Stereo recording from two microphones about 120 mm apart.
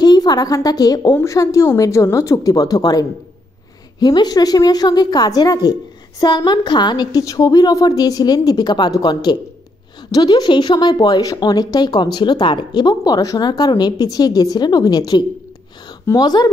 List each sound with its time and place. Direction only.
0.0 s a woman's voice: 35° left (ahead or behind)